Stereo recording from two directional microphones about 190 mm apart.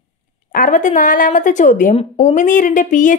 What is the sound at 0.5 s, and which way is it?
A woman's voice, 45° left (ahead or behind).